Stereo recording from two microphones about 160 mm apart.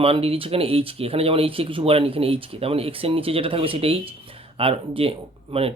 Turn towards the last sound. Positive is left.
turn(degrees=-40)  # may be behind; listen again after turning